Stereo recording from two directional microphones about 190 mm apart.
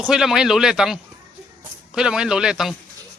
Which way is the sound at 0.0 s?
5° right (ahead or behind).